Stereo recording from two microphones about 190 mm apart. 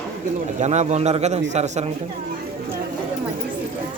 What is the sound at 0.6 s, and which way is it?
A man's voice, 35° right (ahead or behind).